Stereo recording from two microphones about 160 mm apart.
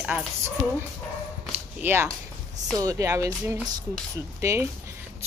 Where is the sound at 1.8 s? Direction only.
10° right (ahead or behind).